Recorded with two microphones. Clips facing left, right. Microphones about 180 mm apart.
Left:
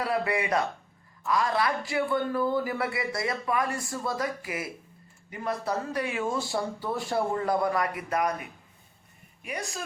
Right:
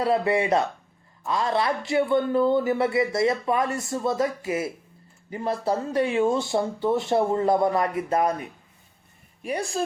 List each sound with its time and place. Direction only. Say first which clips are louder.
0.0 s a man's voice: right 6 dB; 25° right (ahead or behind)